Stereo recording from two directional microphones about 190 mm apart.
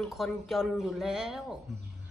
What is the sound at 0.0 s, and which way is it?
Speech, centre (ahead or behind).